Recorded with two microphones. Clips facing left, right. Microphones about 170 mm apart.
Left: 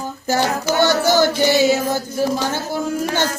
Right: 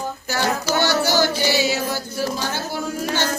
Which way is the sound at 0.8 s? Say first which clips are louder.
Left 5 dB; 50° left (ahead or behind).